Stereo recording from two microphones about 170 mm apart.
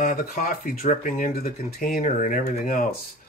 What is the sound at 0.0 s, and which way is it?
Speech, 50° left (ahead or behind).